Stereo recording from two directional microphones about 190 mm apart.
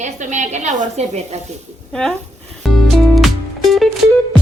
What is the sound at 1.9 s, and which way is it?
Speech, 5° left (ahead or behind).